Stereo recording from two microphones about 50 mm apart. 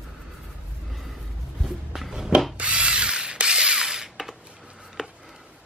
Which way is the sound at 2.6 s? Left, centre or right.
Right.